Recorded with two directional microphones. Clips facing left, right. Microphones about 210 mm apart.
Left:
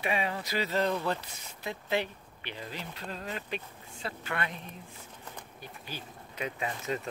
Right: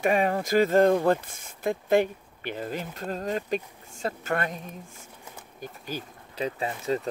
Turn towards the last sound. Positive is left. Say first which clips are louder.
# right 6 dB
turn(degrees=-35)  # may be behind; listen again after turning